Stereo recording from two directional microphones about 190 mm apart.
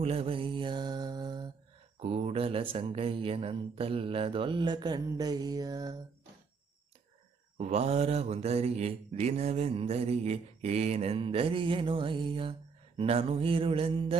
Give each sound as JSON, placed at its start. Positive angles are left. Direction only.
{"t": 0.0, "sound": "mantra", "side_deg": -30}
{"t": 2.0, "sound": "speech", "side_deg": -35}
{"t": 7.6, "sound": "mantra", "side_deg": -35}
{"t": 13.0, "sound": "speech", "side_deg": -30}